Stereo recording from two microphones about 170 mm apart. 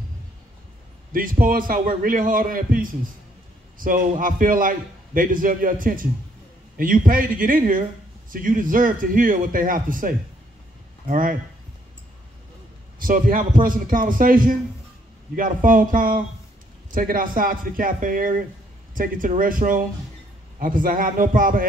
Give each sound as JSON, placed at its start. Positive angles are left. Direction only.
{"t": 1.1, "sound": "a man's voice", "side_deg": -55}
{"t": 13.0, "sound": "a man's voice", "side_deg": -55}